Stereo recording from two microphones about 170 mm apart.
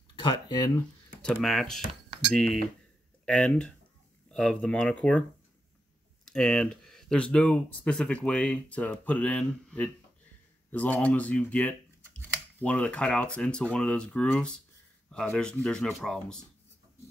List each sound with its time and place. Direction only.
0.1 s speech: 25° left (ahead or behind)
1.2 s speech: 5° left (ahead or behind)
6.2 s speech: 5° left (ahead or behind)